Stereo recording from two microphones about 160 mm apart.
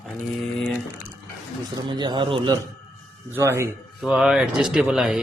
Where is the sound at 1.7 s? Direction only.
25° right (ahead or behind).